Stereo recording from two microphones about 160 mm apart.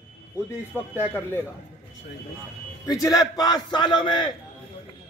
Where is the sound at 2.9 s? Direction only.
20° left (ahead or behind).